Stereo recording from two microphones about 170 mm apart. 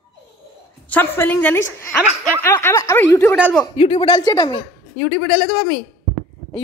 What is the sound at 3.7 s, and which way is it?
Speech, 35° left (ahead or behind).